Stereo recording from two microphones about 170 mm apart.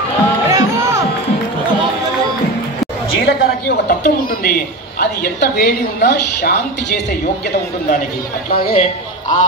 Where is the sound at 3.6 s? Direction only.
65° left (ahead or behind).